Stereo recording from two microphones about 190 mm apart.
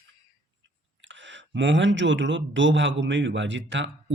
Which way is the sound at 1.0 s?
75° right (ahead or behind).